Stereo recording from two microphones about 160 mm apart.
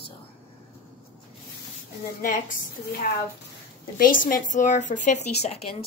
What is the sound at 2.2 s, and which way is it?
A woman's voice, 55° left (ahead or behind).